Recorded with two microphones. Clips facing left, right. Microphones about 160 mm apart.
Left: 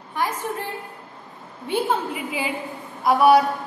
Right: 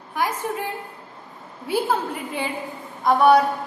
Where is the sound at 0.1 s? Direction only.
10° right (ahead or behind).